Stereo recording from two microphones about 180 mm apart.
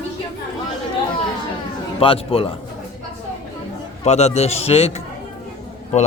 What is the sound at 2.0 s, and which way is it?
Speech, 30° left (ahead or behind).